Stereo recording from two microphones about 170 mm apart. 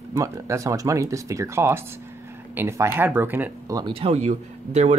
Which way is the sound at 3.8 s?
30° right (ahead or behind).